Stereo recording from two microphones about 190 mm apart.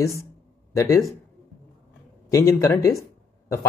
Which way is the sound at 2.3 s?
15° left (ahead or behind).